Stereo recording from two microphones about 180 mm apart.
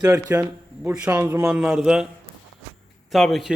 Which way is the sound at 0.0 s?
15° right (ahead or behind).